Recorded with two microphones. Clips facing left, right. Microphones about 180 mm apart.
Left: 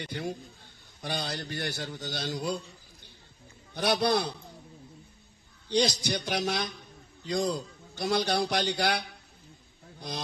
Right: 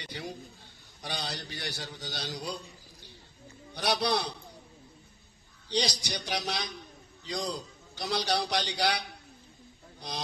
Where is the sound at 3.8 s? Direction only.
50° left (ahead or behind).